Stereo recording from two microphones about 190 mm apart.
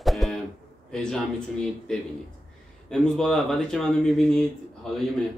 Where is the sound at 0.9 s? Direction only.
5° left (ahead or behind).